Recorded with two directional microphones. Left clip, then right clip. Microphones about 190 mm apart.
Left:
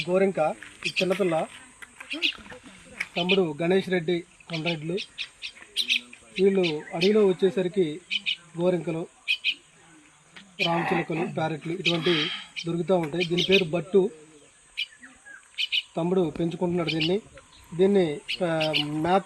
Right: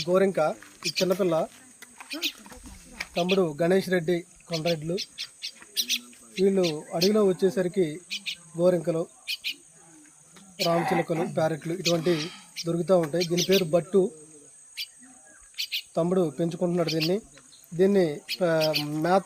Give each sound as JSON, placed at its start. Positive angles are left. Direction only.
{"t": 0.0, "sound": "speech", "side_deg": -15}
{"t": 0.3, "sound": "bird", "side_deg": -20}
{"t": 2.0, "sound": "a sound", "side_deg": -20}
{"t": 3.2, "sound": "bird", "side_deg": -25}
{"t": 5.7, "sound": "speech", "side_deg": -25}
{"t": 8.1, "sound": "bird", "side_deg": -25}
{"t": 10.7, "sound": "speech", "side_deg": -5}
{"t": 11.3, "sound": "bird", "side_deg": -25}
{"t": 11.9, "sound": "speech", "side_deg": -10}
{"t": 12.5, "sound": "speech", "side_deg": -25}
{"t": 13.1, "sound": "bird", "side_deg": -25}
{"t": 15.5, "sound": "speech", "side_deg": -25}
{"t": 17.7, "sound": "bird", "side_deg": -25}